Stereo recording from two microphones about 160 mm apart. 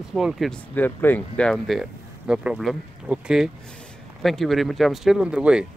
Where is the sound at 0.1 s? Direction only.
Centre (ahead or behind).